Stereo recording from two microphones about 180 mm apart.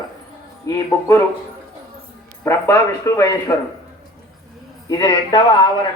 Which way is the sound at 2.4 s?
15° left (ahead or behind).